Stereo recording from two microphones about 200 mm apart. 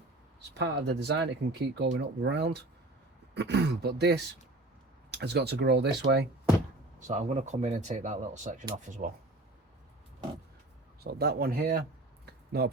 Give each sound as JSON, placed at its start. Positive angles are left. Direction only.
{"t": 0.5, "sound": "speech", "side_deg": -55}
{"t": 7.1, "sound": "speech", "side_deg": -35}
{"t": 11.0, "sound": "speech", "side_deg": -55}